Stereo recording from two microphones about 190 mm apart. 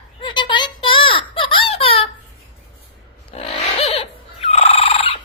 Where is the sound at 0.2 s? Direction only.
25° left (ahead or behind).